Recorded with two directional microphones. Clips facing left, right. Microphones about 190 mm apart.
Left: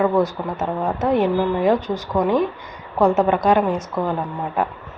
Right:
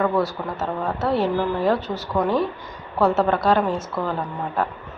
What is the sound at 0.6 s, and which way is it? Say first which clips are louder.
Speech: left 3 dB; 15° left (ahead or behind).